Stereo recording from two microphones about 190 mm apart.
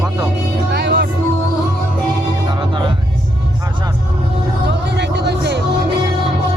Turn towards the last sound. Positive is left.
turn(degrees=-65)  # may be behind; listen again after turning